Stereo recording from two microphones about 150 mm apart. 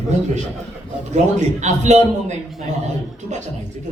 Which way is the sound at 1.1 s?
50° right (ahead or behind).